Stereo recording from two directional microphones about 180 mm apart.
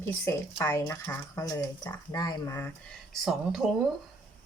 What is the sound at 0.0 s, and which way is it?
Speech, 15° left (ahead or behind).